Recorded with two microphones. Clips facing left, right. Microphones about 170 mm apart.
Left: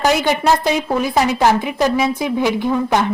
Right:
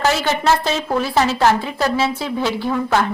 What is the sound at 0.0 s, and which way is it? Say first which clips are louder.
A woman's voice: left 2 dB; 15° left (ahead or behind).